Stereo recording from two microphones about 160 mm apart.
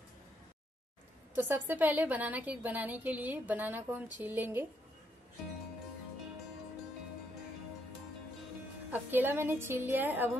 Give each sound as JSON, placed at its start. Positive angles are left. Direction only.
{"t": 1.3, "sound": "a woman's voice", "side_deg": -10}
{"t": 8.9, "sound": "a woman's voice", "side_deg": -10}